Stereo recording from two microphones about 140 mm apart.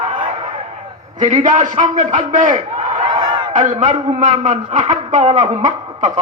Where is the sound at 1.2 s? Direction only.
65° right (ahead or behind).